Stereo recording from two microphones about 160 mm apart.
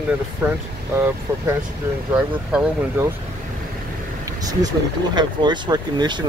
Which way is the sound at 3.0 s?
10° right (ahead or behind).